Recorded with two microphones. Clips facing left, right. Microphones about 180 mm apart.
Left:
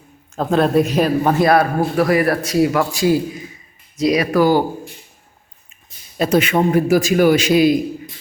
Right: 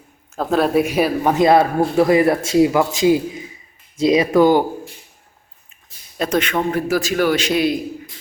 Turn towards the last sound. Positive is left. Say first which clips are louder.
# left 5 dB
turn(degrees=10)  # may be behind; listen again after turning